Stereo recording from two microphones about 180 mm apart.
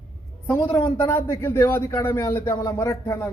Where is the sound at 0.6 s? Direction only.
25° left (ahead or behind).